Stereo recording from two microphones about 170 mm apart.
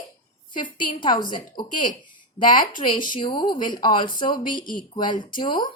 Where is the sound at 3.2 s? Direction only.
25° left (ahead or behind).